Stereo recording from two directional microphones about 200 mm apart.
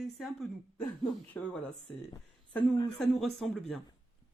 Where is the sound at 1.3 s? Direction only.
10° left (ahead or behind).